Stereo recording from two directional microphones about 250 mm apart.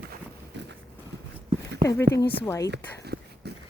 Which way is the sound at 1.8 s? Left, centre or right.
Centre.